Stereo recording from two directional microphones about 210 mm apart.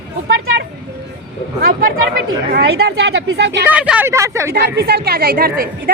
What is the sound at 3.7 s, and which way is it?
Speech, 5° right (ahead or behind).